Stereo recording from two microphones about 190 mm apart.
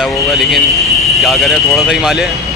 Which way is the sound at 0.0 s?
Centre (ahead or behind).